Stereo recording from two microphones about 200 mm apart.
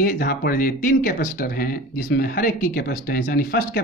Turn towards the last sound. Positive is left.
turn(degrees=50)  # may be behind; listen again after turning